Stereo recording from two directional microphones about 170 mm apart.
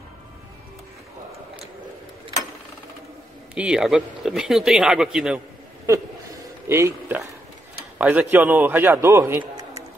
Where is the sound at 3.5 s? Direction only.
5° right (ahead or behind).